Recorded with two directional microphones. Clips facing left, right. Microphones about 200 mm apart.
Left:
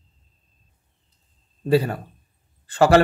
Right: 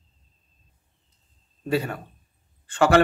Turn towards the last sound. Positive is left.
turn(degrees=35)  # may be behind; listen again after turning